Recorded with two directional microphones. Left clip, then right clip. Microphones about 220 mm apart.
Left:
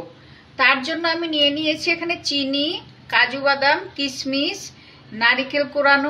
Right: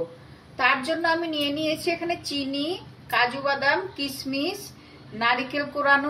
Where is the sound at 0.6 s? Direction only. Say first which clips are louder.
Left 5 dB; 50° left (ahead or behind).